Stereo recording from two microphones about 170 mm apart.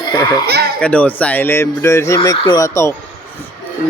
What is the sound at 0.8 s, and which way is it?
Speech, 10° left (ahead or behind).